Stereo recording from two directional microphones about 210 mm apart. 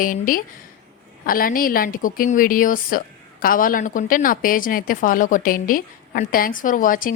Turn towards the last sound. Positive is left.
turn(degrees=40)  # may be behind; listen again after turning